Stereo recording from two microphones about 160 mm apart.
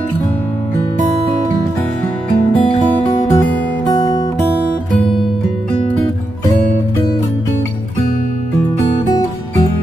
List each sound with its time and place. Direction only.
3.3 s music: 25° left (ahead or behind)